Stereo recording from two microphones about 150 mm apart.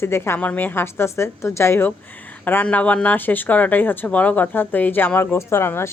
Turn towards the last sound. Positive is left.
turn(degrees=15)  # may be behind; listen again after turning